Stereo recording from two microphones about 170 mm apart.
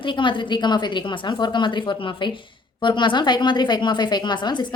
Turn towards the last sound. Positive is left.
turn(degrees=25)  # may be behind; listen again after turning